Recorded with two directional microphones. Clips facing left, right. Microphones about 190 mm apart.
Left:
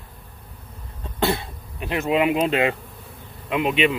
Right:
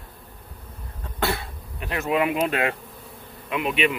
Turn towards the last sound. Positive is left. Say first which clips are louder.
# left 3 dB
turn(degrees=25)  # may be behind; listen again after turning